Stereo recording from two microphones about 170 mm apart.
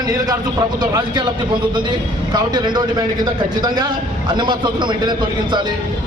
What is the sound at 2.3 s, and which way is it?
A man's voice, 25° right (ahead or behind).